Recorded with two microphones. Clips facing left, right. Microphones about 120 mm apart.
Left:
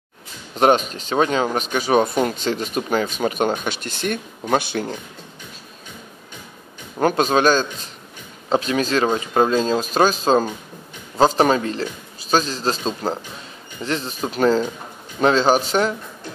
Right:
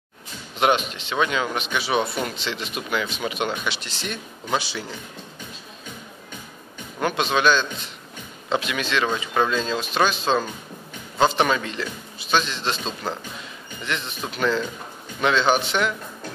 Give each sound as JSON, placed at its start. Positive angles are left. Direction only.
{"t": 0.6, "sound": "speech", "side_deg": 40}
{"t": 7.0, "sound": "speech", "side_deg": 40}